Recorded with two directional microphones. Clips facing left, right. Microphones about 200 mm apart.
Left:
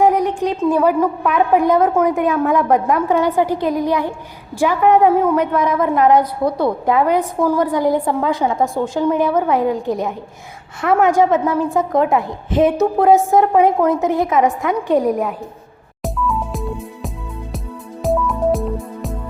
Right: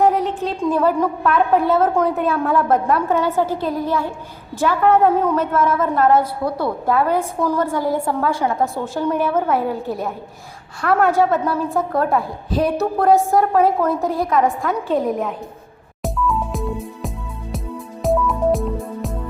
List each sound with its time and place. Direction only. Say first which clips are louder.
0.0 s a woman's voice: left 2 dB; 15° left (ahead or behind)
16.0 s music: even; centre (ahead or behind)